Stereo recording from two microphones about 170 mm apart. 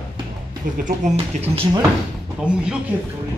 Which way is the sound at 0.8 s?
35° right (ahead or behind).